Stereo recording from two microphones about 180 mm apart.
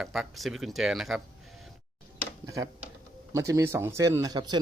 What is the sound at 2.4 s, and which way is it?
Speech, 20° right (ahead or behind).